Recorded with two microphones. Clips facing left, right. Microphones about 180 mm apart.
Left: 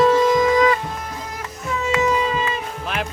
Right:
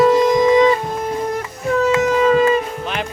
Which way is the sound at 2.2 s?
50° right (ahead or behind).